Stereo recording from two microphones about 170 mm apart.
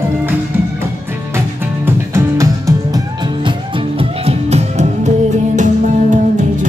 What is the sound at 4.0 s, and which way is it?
Music, 35° right (ahead or behind).